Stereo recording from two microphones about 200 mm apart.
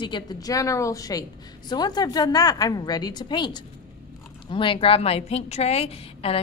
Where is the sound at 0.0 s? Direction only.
20° left (ahead or behind).